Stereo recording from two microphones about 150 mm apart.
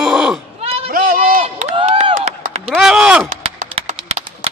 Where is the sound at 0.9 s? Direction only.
70° right (ahead or behind).